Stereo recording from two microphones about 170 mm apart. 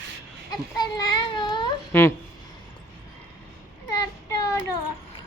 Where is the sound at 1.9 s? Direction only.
15° left (ahead or behind).